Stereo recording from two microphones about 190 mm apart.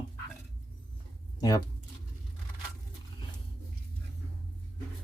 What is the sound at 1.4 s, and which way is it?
Speech, 20° left (ahead or behind).